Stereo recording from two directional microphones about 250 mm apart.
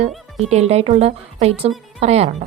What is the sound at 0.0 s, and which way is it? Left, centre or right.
Speech, right.